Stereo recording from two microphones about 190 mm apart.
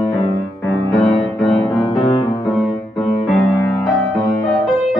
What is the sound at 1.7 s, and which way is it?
Music, 20° left (ahead or behind).